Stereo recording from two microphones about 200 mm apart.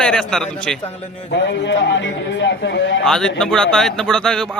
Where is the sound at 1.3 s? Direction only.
65° left (ahead or behind).